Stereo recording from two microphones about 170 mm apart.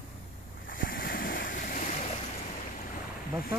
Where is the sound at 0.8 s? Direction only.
60° left (ahead or behind).